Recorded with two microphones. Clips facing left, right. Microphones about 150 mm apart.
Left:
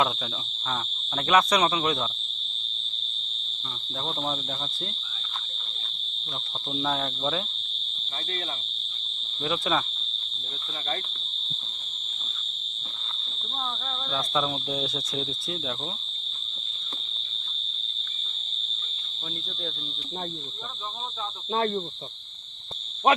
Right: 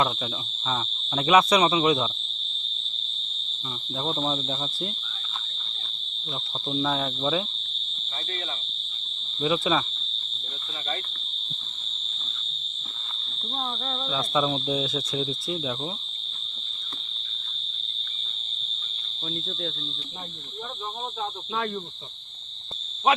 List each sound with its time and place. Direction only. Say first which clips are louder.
0.7 s cricket: right 3 dB; 5° right (ahead or behind)
4.0 s speech: right 4 dB; 5° right (ahead or behind)
6.7 s cricket: right 2 dB; centre (ahead or behind)
9.4 s cricket: right 3 dB; 5° right (ahead or behind)
14.1 s cricket: right 3 dB; 5° right (ahead or behind)
21.5 s speech: left 5 dB; 40° left (ahead or behind)